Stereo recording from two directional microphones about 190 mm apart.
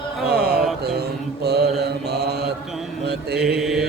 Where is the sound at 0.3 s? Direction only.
55° right (ahead or behind).